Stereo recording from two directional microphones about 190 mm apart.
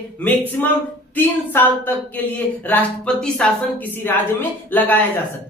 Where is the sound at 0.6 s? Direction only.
10° left (ahead or behind).